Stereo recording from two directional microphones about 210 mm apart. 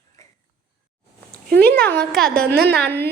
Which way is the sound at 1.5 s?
50° right (ahead or behind).